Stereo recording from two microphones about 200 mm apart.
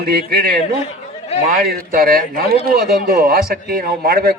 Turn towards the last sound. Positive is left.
turn(degrees=-50)  # may be behind; listen again after turning